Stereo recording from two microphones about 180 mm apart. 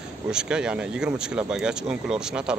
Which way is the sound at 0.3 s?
5° right (ahead or behind).